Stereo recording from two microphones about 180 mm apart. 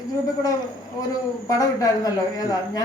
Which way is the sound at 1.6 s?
20° left (ahead or behind).